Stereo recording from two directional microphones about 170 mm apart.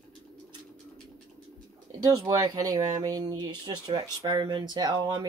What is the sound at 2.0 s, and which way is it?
Speech, 20° right (ahead or behind).